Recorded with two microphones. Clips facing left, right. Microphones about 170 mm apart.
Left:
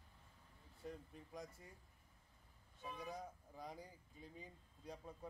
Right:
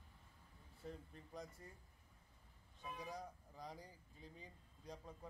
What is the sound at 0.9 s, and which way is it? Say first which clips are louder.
Speech: left 1 dB; 5° left (ahead or behind).